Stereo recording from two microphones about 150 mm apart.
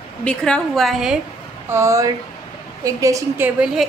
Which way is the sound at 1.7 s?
20° right (ahead or behind).